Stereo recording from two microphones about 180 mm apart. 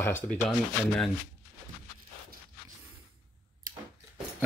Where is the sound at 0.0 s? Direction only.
10° left (ahead or behind).